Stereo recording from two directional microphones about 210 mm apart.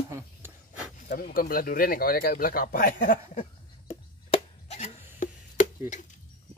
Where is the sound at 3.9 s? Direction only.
30° left (ahead or behind).